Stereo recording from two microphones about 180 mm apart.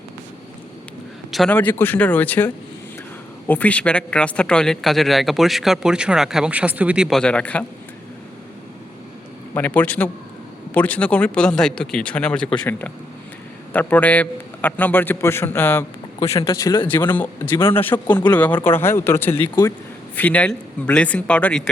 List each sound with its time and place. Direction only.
1.3 s a man's voice: centre (ahead or behind)
9.6 s a man's voice: 10° left (ahead or behind)
13.7 s a man's voice: 10° left (ahead or behind)
16.9 s a man's voice: 10° left (ahead or behind)